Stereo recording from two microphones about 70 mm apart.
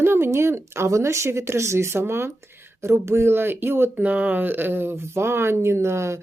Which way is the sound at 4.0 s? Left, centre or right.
Right.